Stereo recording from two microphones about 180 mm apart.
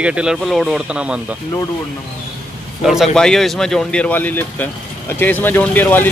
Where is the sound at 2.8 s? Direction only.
Centre (ahead or behind).